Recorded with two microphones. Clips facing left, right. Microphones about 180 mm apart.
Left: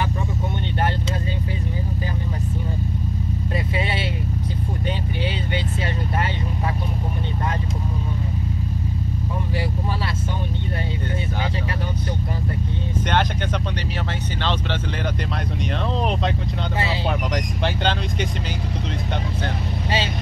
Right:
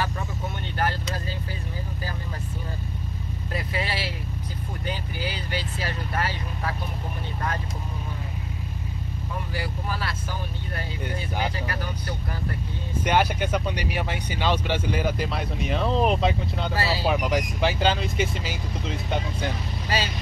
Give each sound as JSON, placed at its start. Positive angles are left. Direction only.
{"t": 3.5, "sound": "vehicle", "side_deg": 25}
{"t": 13.0, "sound": "vehicle", "side_deg": -10}
{"t": 15.7, "sound": "speech", "side_deg": 0}